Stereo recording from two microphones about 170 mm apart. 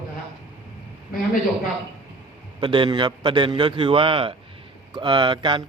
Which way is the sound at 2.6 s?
30° right (ahead or behind).